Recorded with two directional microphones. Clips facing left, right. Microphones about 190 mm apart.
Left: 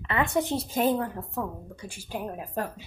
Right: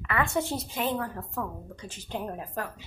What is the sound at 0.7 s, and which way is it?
Speech, 40° left (ahead or behind).